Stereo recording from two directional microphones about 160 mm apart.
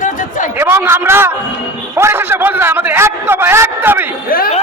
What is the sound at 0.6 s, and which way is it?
Speech, 15° right (ahead or behind).